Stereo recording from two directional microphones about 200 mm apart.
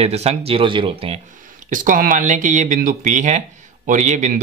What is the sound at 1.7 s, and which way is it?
A man's voice, 45° right (ahead or behind).